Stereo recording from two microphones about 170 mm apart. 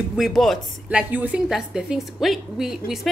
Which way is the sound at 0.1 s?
Centre (ahead or behind).